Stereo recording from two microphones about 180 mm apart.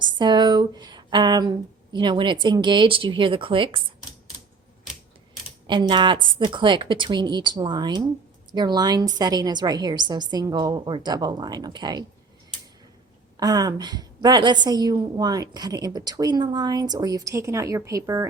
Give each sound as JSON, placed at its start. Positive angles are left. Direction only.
{"t": 0.0, "sound": "a sound", "side_deg": -25}
{"t": 1.9, "sound": "a woman's voice", "side_deg": -25}
{"t": 5.6, "sound": "a woman's voice", "side_deg": -25}
{"t": 13.3, "sound": "a woman's voice", "side_deg": -20}